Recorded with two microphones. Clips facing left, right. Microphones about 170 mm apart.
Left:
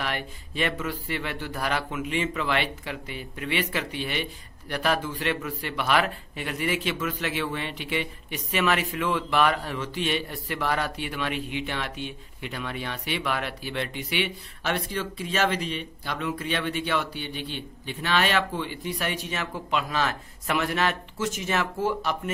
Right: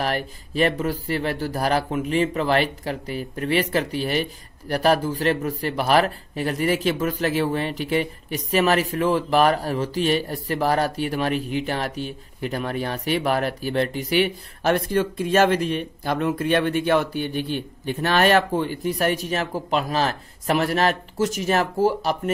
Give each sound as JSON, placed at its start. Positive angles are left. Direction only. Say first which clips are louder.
{"t": 0.0, "sound": "speech", "louder": "right 6 dB", "side_deg": -40}